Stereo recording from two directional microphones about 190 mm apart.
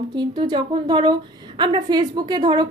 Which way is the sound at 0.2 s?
25° right (ahead or behind).